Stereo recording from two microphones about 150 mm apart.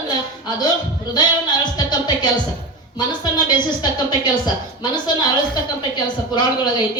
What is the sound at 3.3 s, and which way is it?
Speech, 30° left (ahead or behind).